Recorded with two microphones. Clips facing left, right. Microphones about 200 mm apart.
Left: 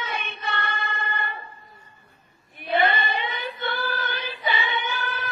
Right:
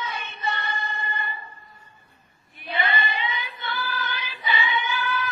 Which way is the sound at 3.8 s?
50° left (ahead or behind).